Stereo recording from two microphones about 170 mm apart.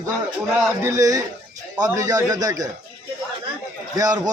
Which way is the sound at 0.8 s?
20° right (ahead or behind).